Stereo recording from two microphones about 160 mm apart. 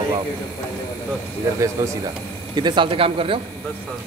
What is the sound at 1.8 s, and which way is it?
Speech, 20° right (ahead or behind).